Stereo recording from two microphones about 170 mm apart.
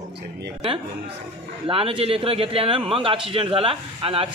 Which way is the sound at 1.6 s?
30° right (ahead or behind).